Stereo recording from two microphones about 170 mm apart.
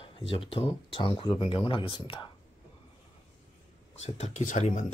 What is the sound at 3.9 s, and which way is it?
Speech, 40° left (ahead or behind).